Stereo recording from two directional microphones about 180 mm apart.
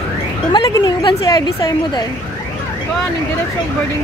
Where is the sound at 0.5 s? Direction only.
25° left (ahead or behind).